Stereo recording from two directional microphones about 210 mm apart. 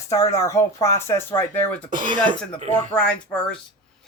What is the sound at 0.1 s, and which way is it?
Speech, 15° left (ahead or behind).